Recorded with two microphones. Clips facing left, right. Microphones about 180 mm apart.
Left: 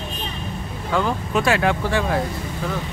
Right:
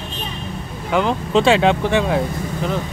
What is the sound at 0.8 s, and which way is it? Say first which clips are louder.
Speech: right 3 dB; 20° right (ahead or behind).